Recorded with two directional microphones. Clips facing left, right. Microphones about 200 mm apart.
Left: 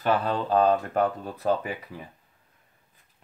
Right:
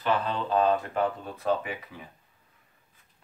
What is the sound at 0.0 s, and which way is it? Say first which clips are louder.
Speech: left 3 dB; 45° left (ahead or behind).